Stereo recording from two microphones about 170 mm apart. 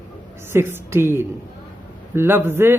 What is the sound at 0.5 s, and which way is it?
Speech, 15° right (ahead or behind).